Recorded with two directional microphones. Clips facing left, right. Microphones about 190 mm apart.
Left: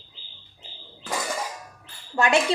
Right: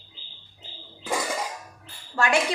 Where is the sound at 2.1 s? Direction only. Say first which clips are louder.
Left 2 dB; 20° left (ahead or behind).